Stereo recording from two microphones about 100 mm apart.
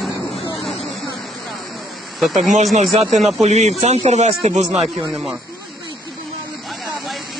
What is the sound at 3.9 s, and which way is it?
Speech, 90° right.